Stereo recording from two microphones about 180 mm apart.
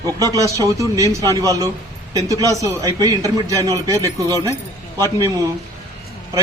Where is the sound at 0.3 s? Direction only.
20° right (ahead or behind).